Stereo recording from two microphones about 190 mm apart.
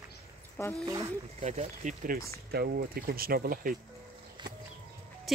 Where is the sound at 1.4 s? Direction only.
35° right (ahead or behind).